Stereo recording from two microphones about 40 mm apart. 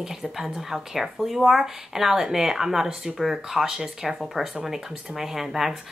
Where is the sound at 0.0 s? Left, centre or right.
Centre.